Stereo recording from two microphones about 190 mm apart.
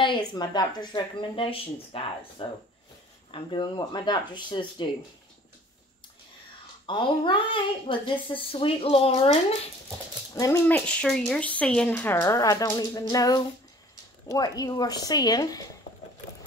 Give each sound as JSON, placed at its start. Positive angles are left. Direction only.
{"t": 0.0, "sound": "a woman's voice", "side_deg": 25}
{"t": 6.9, "sound": "a woman's voice", "side_deg": 25}
{"t": 10.3, "sound": "speech", "side_deg": 20}
{"t": 10.7, "sound": "a woman's voice", "side_deg": 5}